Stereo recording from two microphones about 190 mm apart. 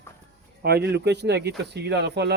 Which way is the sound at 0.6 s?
60° right (ahead or behind).